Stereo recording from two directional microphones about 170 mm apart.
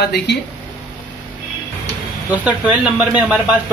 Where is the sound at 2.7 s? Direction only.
10° right (ahead or behind).